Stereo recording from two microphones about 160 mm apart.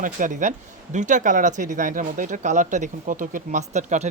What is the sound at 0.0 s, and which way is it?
Speech, 55° right (ahead or behind).